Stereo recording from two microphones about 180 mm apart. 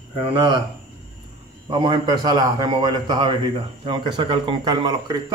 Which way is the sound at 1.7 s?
25° right (ahead or behind).